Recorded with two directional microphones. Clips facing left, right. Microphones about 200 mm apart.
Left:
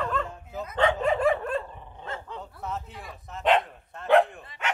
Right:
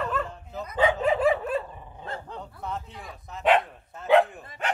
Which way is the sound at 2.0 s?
35° right (ahead or behind).